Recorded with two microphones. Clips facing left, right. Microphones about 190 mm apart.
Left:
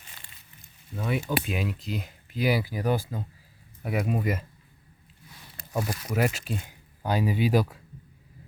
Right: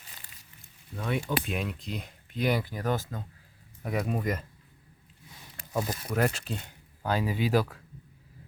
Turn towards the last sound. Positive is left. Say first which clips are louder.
# left 2 dB
turn(degrees=15)  # may be behind; listen again after turning